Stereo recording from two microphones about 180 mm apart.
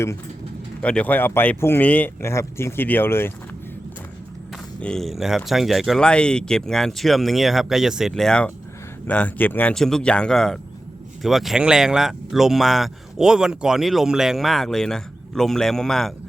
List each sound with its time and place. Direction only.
0.8 s speech: 5° left (ahead or behind)
4.8 s speech: 5° left (ahead or behind)